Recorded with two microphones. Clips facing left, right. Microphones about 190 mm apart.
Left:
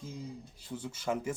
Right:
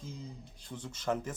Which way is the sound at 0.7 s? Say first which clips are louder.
Even; 10° left (ahead or behind).